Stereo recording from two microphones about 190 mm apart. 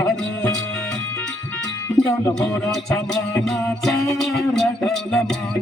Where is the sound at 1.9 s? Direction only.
Centre (ahead or behind).